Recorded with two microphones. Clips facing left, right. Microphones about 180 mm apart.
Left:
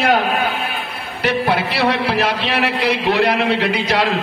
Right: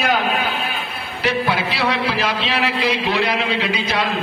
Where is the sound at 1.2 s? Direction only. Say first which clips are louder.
Left 2 dB; 65° left (ahead or behind).